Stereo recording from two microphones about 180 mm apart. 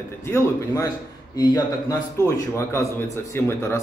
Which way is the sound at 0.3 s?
15° left (ahead or behind).